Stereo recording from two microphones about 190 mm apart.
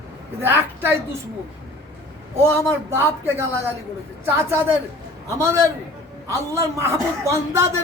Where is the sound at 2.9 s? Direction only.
10° right (ahead or behind).